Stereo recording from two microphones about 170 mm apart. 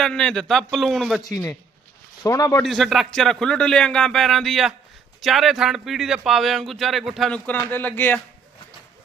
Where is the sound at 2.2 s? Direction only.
20° left (ahead or behind).